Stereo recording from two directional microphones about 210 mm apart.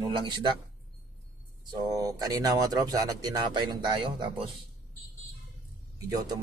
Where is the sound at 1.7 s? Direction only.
15° right (ahead or behind).